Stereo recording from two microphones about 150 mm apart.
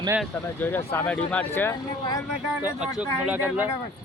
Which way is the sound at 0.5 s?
15° left (ahead or behind).